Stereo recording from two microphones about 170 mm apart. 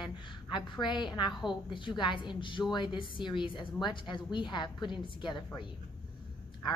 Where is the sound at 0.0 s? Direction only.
25° left (ahead or behind).